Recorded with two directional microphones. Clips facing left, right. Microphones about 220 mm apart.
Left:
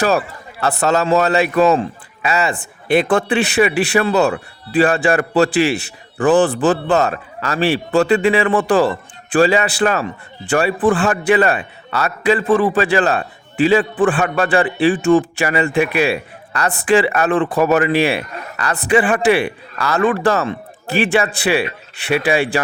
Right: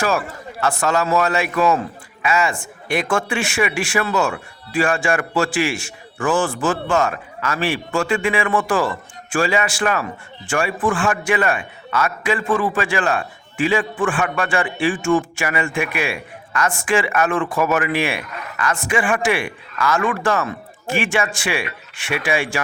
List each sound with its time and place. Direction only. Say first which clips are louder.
0.6 s a man's voice: left 3 dB; 35° left (ahead or behind)